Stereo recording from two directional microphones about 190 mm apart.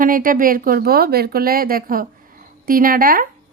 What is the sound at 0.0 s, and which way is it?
A woman's voice, 45° right (ahead or behind).